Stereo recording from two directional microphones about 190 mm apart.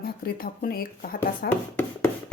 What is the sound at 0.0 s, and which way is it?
Speech, 50° left (ahead or behind).